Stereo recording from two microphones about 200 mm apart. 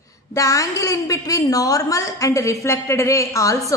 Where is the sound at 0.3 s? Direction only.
15° left (ahead or behind).